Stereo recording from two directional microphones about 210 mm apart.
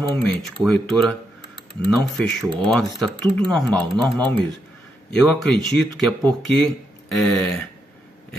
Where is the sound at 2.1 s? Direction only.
Centre (ahead or behind).